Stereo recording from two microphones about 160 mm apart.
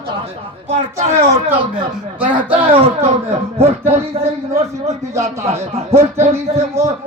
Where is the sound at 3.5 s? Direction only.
40° right (ahead or behind).